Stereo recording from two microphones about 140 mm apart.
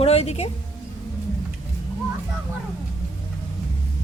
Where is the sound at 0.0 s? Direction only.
45° left (ahead or behind).